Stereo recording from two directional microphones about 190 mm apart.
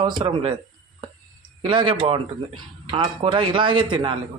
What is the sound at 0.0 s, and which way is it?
Speech, 25° right (ahead or behind).